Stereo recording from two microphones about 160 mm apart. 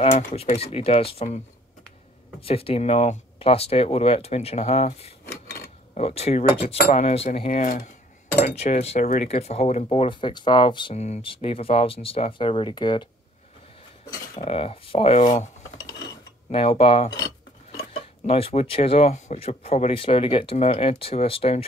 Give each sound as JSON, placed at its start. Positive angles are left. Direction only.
{"t": 0.4, "sound": "speech", "side_deg": 40}
{"t": 2.4, "sound": "speech", "side_deg": 35}
{"t": 7.6, "sound": "speech", "side_deg": 60}
{"t": 8.3, "sound": "speech", "side_deg": 40}
{"t": 9.8, "sound": "speech", "side_deg": 30}
{"t": 11.0, "sound": "speech", "side_deg": 40}
{"t": 14.1, "sound": "cutlery", "side_deg": 25}
{"t": 14.5, "sound": "speech", "side_deg": 35}
{"t": 18.2, "sound": "speech", "side_deg": 35}